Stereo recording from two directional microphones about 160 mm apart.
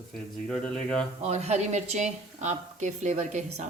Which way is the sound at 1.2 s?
45° right (ahead or behind).